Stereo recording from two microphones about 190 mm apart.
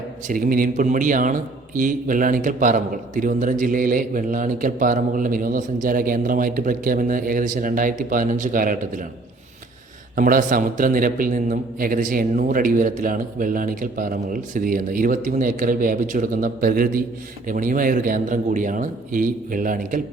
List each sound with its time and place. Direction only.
0.3 s a man's voice: 45° right (ahead or behind)
10.2 s a man's voice: 45° right (ahead or behind)